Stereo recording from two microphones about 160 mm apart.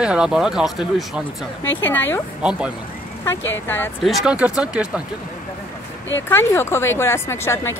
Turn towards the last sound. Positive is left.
turn(degrees=15)  # may be behind; listen again after turning